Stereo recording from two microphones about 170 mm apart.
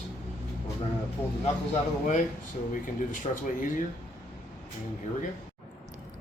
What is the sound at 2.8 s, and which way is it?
Speech, 50° left (ahead or behind).